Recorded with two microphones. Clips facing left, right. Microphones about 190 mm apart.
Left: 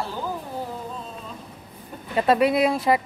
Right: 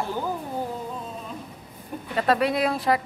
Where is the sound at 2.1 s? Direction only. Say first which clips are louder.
Left 3 dB; 15° left (ahead or behind).